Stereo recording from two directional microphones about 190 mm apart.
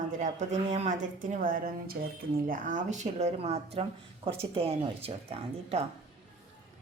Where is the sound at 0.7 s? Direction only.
40° right (ahead or behind).